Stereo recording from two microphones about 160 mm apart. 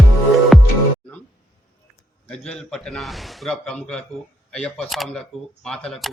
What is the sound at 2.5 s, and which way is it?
A man's voice, 5° left (ahead or behind).